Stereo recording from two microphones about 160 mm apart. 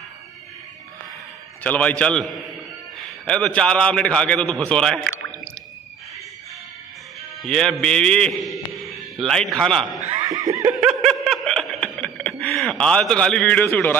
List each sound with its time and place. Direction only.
1.6 s a man's voice: 10° left (ahead or behind)
7.4 s a man's voice: 5° left (ahead or behind)
10.2 s snicker: 20° right (ahead or behind)
10.8 s snicker: centre (ahead or behind)